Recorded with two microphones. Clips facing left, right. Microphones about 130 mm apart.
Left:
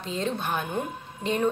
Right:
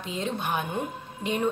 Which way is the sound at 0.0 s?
15° right (ahead or behind).